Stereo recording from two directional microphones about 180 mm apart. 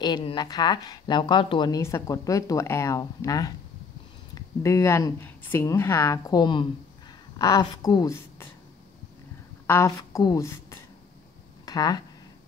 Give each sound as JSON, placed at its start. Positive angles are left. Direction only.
{"t": 0.0, "sound": "a woman's voice", "side_deg": 25}
{"t": 9.7, "sound": "a woman's voice", "side_deg": 15}